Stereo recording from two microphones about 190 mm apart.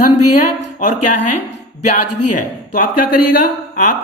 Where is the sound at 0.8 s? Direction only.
40° left (ahead or behind).